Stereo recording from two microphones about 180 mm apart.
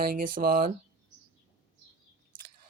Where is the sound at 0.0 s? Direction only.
55° right (ahead or behind).